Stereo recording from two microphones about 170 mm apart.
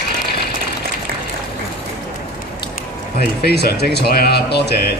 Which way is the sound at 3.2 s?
70° left (ahead or behind).